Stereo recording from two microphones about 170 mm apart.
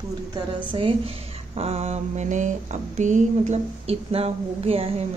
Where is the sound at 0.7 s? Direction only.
30° right (ahead or behind).